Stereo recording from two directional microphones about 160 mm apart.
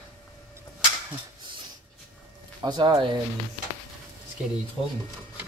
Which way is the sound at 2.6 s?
25° right (ahead or behind).